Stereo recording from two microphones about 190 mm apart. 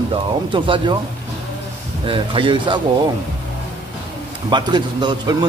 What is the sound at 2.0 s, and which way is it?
Speech, 30° right (ahead or behind).